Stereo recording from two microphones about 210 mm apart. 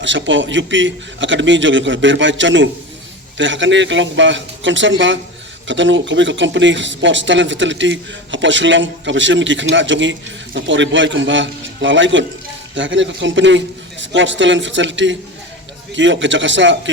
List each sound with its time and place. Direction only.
0.0 s speech: 60° right (ahead or behind)